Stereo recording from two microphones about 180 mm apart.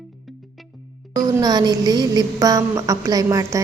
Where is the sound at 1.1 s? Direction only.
20° right (ahead or behind).